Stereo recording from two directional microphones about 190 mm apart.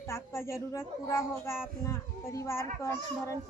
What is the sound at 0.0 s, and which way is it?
A woman's voice, 15° left (ahead or behind).